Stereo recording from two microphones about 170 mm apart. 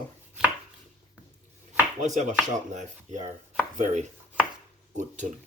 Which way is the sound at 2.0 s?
45° right (ahead or behind).